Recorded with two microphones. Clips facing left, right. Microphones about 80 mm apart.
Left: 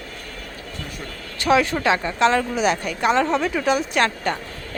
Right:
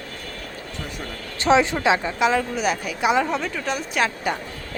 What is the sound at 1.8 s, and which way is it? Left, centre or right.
Speech, centre.